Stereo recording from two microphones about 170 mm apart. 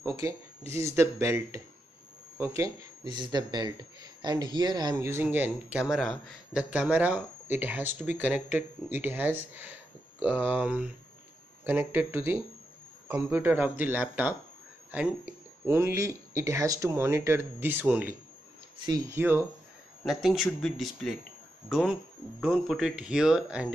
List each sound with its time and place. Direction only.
0.0 s speech: 20° right (ahead or behind)
15.6 s speech: 15° right (ahead or behind)
20.1 s speech: centre (ahead or behind)